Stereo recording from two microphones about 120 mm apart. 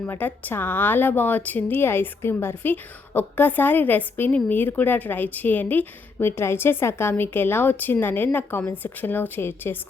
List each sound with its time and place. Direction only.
0.0 s speech: 15° left (ahead or behind)